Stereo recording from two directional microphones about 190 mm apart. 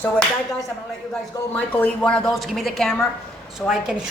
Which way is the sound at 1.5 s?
5° left (ahead or behind).